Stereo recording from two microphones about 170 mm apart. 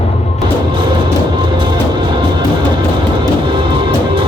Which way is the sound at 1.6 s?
30° right (ahead or behind).